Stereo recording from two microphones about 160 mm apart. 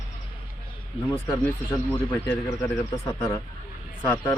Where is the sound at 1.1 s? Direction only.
15° left (ahead or behind).